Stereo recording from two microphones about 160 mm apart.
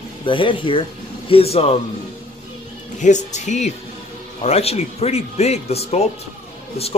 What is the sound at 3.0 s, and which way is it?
A man's voice, 50° left (ahead or behind).